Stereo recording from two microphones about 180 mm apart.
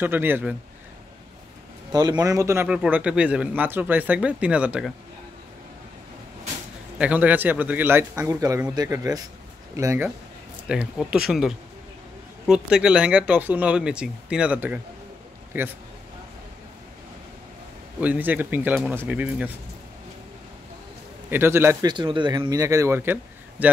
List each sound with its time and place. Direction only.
0.0 s a man's voice: 10° right (ahead or behind)
1.9 s a man's voice: 20° right (ahead or behind); by 4.9 s 5° right (ahead or behind)
7.0 s a man's voice: 10° right (ahead or behind)
18.0 s a man's voice: 10° right (ahead or behind)
21.3 s a man's voice: 15° right (ahead or behind)
21.8 s speech: 25° right (ahead or behind)